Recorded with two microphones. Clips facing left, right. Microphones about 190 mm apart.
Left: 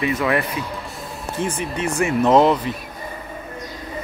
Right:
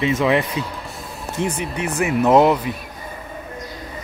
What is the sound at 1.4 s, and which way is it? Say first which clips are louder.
Speech: even; 70° right (ahead or behind).